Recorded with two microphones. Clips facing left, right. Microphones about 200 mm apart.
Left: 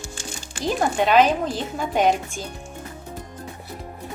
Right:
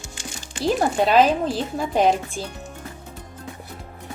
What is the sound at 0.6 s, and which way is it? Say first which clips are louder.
Speech: right 2 dB; 35° right (ahead or behind).